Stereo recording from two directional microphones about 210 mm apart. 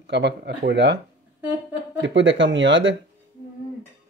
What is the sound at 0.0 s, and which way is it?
Speech, 55° right (ahead or behind).